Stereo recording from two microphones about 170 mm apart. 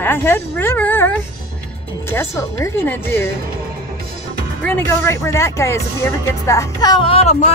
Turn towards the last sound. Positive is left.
turn(degrees=40)  # may be behind; listen again after turning